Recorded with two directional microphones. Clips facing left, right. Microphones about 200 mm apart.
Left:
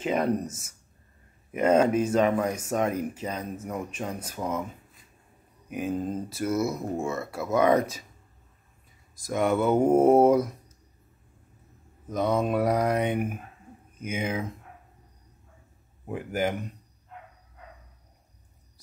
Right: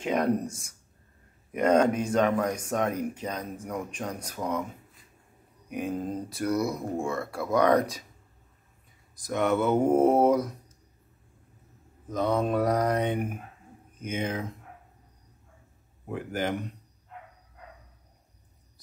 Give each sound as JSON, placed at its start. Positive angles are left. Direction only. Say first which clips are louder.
{"t": 0.0, "sound": "speech", "louder": "even", "side_deg": 5}
{"t": 5.7, "sound": "speech", "louder": "left 2 dB", "side_deg": 5}
{"t": 9.3, "sound": "speech", "louder": "left 1 dB", "side_deg": 5}
{"t": 12.1, "sound": "speech", "louder": "left 1 dB", "side_deg": 10}
{"t": 16.1, "sound": "speech", "louder": "left 2 dB", "side_deg": 10}